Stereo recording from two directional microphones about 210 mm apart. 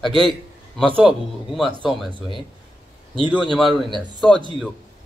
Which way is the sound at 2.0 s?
25° right (ahead or behind).